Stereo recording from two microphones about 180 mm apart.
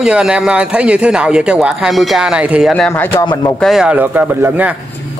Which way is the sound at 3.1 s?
25° left (ahead or behind).